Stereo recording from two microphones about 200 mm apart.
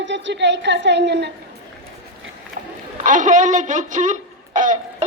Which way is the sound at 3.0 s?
40° right (ahead or behind).